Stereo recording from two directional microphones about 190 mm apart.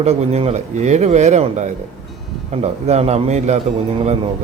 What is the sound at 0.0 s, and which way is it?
Speech, 35° right (ahead or behind).